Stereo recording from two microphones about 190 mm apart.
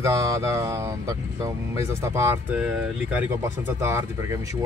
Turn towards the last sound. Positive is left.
turn(degrees=-15)  # may be behind; listen again after turning